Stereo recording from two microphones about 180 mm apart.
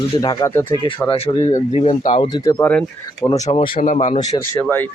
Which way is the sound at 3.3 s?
40° left (ahead or behind).